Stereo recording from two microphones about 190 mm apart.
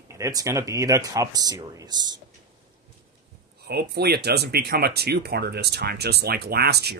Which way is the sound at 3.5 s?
55° right (ahead or behind).